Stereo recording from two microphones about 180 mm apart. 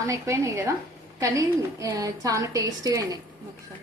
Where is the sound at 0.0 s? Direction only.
15° right (ahead or behind).